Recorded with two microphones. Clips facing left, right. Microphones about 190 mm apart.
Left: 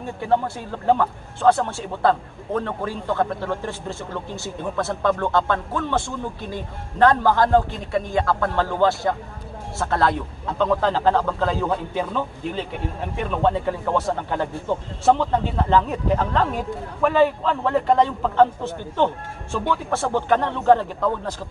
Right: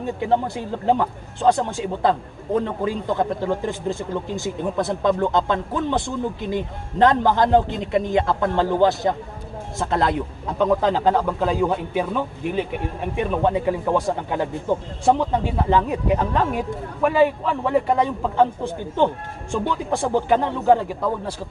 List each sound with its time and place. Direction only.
0.2 s a man's voice: 15° right (ahead or behind)